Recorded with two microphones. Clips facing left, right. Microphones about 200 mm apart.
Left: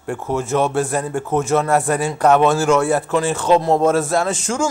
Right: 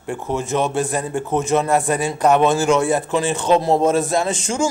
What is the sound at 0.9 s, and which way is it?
A man's voice, 15° right (ahead or behind).